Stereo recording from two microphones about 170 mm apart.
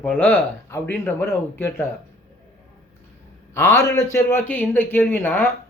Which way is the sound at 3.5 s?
15° left (ahead or behind).